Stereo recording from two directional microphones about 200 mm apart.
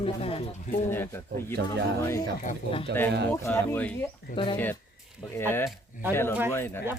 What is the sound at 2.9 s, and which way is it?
Speech, 55° right (ahead or behind).